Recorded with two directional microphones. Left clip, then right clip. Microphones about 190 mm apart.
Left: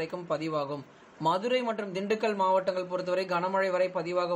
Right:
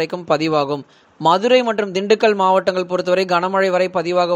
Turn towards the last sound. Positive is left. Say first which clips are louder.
# right 12 dB
turn(degrees=-40)  # may be behind; listen again after turning